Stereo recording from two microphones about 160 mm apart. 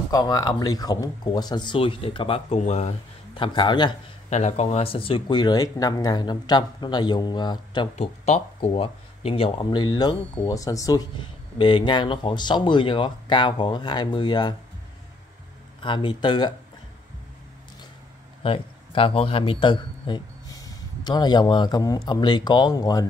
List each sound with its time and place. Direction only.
0.1 s speech: 25° left (ahead or behind)
4.3 s speech: 45° left (ahead or behind); by 7.9 s 25° left (ahead or behind)
7.9 s speech: 40° left (ahead or behind)
15.8 s speech: 30° left (ahead or behind)
18.4 s a man's voice: 35° left (ahead or behind)